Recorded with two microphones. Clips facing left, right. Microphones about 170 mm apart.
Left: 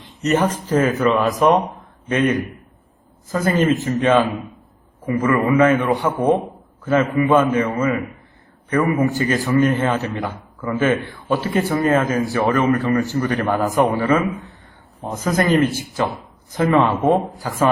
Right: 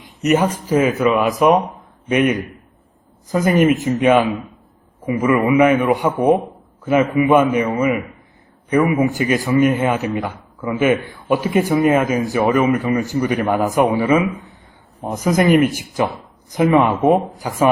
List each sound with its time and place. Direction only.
0.0 s a man's voice: 10° right (ahead or behind)